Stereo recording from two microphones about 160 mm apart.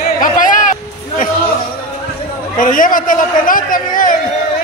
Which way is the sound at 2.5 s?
55° left (ahead or behind).